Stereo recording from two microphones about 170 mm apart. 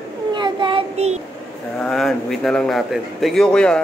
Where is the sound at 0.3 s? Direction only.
30° right (ahead or behind).